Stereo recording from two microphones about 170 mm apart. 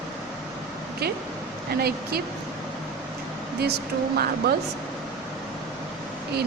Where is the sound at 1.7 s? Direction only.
65° right (ahead or behind).